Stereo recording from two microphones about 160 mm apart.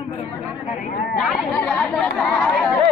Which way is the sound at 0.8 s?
70° left (ahead or behind).